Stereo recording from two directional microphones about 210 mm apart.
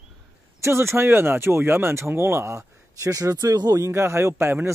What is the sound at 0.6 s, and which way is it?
Speech, 10° right (ahead or behind).